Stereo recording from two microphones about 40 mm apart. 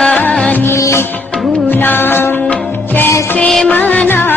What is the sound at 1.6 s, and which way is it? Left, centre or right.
Music, left.